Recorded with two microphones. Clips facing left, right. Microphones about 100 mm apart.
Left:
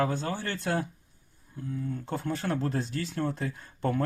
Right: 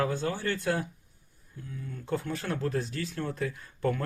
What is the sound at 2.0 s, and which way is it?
Speech, 20° left (ahead or behind).